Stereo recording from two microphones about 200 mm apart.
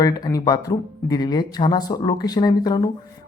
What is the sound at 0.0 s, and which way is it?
Speech, 20° left (ahead or behind).